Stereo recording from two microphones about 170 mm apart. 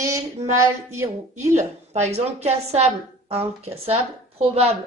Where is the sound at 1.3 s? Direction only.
45° right (ahead or behind).